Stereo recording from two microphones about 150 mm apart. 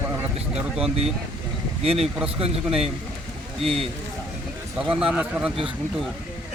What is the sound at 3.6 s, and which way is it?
Speech, centre (ahead or behind).